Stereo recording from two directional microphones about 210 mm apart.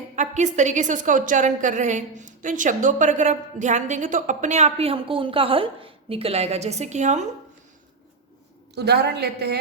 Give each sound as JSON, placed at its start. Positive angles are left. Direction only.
{"t": 0.2, "sound": "a woman's voice", "side_deg": -35}
{"t": 8.7, "sound": "a woman's voice", "side_deg": -50}